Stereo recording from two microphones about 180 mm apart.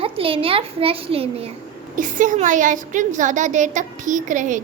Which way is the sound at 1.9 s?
45° right (ahead or behind).